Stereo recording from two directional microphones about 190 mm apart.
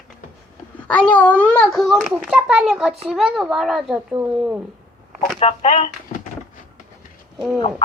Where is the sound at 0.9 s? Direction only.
5° left (ahead or behind).